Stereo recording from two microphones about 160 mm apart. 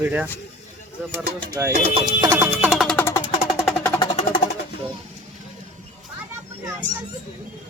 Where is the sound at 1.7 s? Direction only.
40° right (ahead or behind).